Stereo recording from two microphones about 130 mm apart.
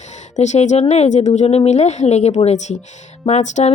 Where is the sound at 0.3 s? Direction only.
60° left (ahead or behind).